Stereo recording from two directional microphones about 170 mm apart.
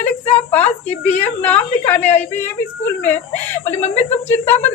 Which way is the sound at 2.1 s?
10° left (ahead or behind).